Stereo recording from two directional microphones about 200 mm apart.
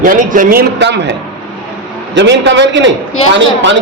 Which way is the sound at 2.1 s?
60° right (ahead or behind).